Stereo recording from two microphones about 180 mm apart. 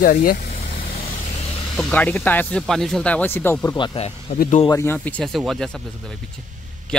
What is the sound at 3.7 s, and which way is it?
Speech, 30° left (ahead or behind).